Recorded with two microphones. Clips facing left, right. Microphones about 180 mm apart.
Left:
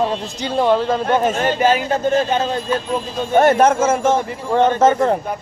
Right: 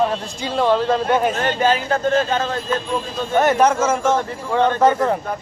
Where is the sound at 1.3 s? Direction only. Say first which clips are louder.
Left 2 dB; 15° left (ahead or behind).